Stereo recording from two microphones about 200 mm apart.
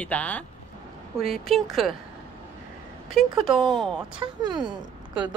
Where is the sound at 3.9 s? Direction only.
5° right (ahead or behind).